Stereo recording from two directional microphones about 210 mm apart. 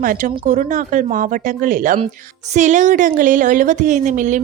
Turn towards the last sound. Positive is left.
turn(degrees=-35)  # may be behind; listen again after turning